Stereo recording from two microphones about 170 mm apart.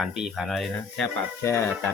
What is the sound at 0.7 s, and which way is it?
Speech, 15° left (ahead or behind).